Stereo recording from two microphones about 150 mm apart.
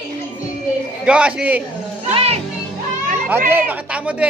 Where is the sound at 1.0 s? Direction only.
5° right (ahead or behind).